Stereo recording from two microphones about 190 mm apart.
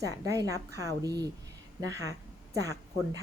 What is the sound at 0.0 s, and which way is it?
A woman's voice, 15° right (ahead or behind).